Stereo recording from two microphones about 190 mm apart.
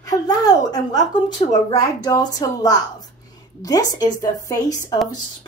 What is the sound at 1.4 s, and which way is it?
A woman's voice, 30° left (ahead or behind).